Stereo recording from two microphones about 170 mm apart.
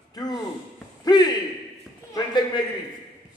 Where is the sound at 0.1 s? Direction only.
25° left (ahead or behind).